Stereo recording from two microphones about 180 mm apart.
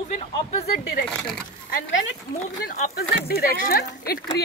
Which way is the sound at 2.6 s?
60° left (ahead or behind).